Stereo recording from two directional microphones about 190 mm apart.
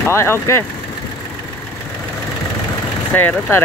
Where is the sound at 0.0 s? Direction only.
15° left (ahead or behind).